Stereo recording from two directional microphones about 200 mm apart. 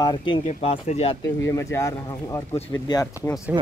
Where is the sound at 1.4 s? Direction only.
15° left (ahead or behind).